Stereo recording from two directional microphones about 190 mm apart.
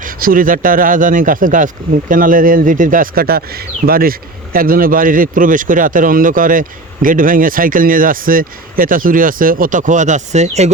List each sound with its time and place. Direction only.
0.0 s speech: 45° right (ahead or behind)